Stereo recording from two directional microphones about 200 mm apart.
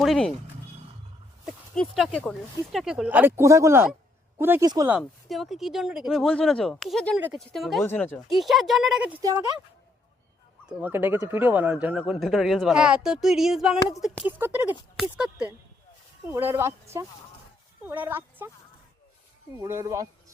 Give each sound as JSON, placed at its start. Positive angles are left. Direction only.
{"t": 0.0, "sound": "speech", "side_deg": 0}
{"t": 1.5, "sound": "speech", "side_deg": 5}
{"t": 4.9, "sound": "speech", "side_deg": 0}
{"t": 7.8, "sound": "speech", "side_deg": 10}
{"t": 9.2, "sound": "speech", "side_deg": -15}
{"t": 10.7, "sound": "speech", "side_deg": -10}
{"t": 19.5, "sound": "speech", "side_deg": -15}